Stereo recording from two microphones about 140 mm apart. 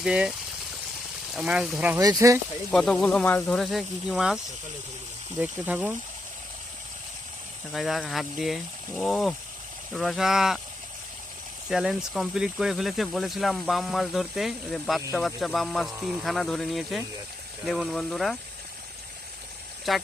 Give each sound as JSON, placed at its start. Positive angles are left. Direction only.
{"t": 0.0, "sound": "speech", "side_deg": -5}
{"t": 1.4, "sound": "speech", "side_deg": -5}
{"t": 2.0, "sound": "speech", "side_deg": -25}
{"t": 2.7, "sound": "speech", "side_deg": 5}
{"t": 5.4, "sound": "speech", "side_deg": -10}
{"t": 7.7, "sound": "speech", "side_deg": 0}
{"t": 11.7, "sound": "speech", "side_deg": 0}
{"t": 19.9, "sound": "speech", "side_deg": 0}